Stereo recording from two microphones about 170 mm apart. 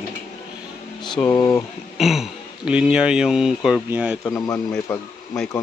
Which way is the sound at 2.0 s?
Centre (ahead or behind).